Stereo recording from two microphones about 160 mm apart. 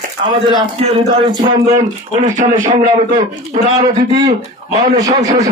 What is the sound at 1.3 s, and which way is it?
Speech, 20° right (ahead or behind).